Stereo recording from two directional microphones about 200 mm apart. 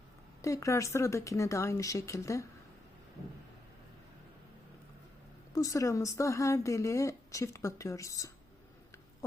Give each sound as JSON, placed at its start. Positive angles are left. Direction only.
{"t": 0.4, "sound": "a woman's voice", "side_deg": 15}
{"t": 5.5, "sound": "a woman's voice", "side_deg": 15}